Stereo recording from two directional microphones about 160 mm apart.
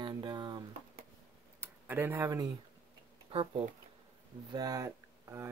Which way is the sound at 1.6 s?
15° right (ahead or behind).